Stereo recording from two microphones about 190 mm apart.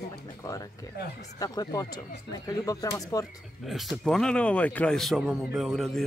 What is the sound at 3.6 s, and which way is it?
A man's voice, centre (ahead or behind).